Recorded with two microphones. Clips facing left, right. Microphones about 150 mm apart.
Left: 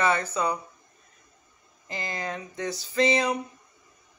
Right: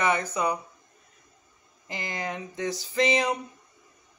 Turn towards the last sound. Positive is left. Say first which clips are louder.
# left 1 dB
turn(degrees=-15)  # may be behind; listen again after turning